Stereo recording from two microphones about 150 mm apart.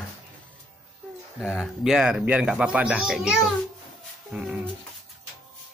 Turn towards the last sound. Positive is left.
turn(degrees=-5)  # may be behind; listen again after turning